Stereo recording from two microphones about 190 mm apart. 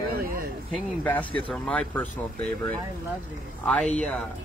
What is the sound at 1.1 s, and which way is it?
Speech, 5° left (ahead or behind).